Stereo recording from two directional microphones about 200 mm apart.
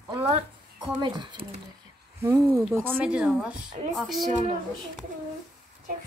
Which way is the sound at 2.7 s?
10° right (ahead or behind).